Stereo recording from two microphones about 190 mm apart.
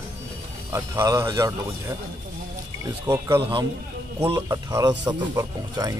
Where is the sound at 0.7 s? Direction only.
20° right (ahead or behind).